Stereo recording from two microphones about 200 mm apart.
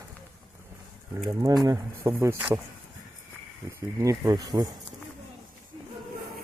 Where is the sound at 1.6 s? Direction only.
15° right (ahead or behind).